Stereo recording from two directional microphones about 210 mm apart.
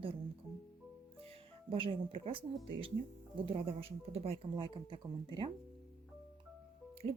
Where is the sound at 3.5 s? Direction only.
25° right (ahead or behind).